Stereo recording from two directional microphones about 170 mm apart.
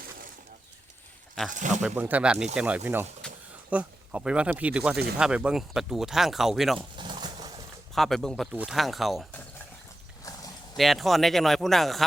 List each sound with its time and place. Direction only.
1.5 s speech: 50° right (ahead or behind)
1.7 s speech: 5° right (ahead or behind)
6.7 s pigeon: 30° right (ahead or behind)
7.9 s speech: centre (ahead or behind)
10.8 s speech: centre (ahead or behind)